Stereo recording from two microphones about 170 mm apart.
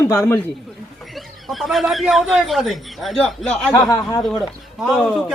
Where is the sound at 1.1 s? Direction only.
Centre (ahead or behind).